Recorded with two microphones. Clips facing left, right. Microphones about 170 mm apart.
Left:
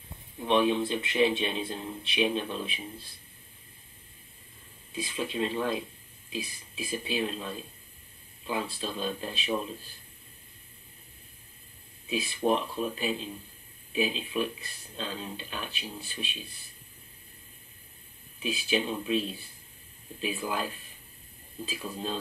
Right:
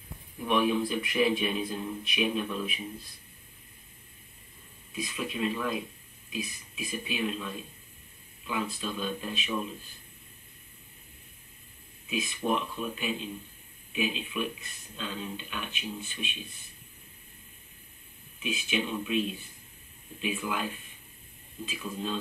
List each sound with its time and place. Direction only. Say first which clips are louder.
0.4 s speech: left 2 dB; 25° left (ahead or behind)
4.9 s speech: left 2 dB; 30° left (ahead or behind)
12.1 s speech: left 3 dB; 35° left (ahead or behind)
18.4 s speech: left 2 dB; 35° left (ahead or behind)